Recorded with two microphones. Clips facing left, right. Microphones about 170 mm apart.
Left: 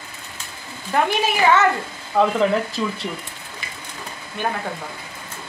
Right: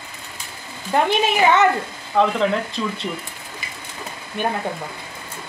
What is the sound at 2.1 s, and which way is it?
Speech, 5° left (ahead or behind).